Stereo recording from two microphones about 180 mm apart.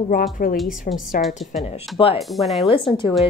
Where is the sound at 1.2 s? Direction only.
50° left (ahead or behind).